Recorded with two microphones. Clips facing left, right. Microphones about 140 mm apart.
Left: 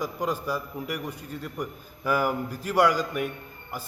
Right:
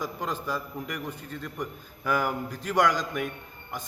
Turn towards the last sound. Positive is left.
turn(degrees=5)  # may be behind; listen again after turning